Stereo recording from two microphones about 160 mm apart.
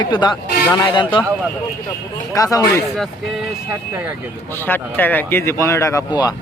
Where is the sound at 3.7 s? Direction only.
10° right (ahead or behind).